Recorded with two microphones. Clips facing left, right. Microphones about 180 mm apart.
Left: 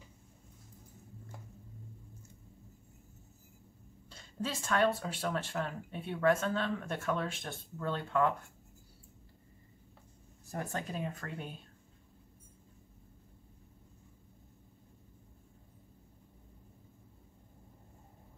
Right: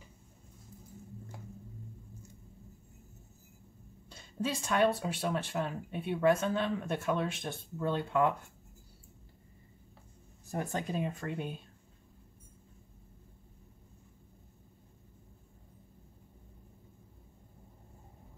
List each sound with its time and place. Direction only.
4.4 s speech: 15° right (ahead or behind)
10.5 s speech: 15° right (ahead or behind)